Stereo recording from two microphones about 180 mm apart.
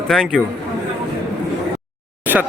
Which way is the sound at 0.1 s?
5° left (ahead or behind).